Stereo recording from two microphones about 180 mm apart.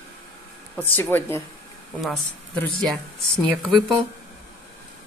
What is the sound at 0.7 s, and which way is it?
A woman's voice, 10° left (ahead or behind).